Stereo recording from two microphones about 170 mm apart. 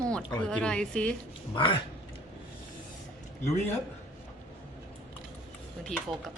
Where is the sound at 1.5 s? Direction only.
30° left (ahead or behind).